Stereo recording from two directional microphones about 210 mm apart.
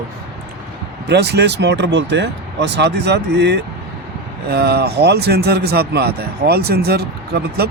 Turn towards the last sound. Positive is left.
turn(degrees=-50)  # may be behind; listen again after turning